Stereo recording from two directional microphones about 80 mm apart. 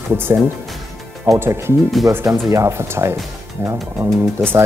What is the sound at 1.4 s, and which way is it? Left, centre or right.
Speech, right.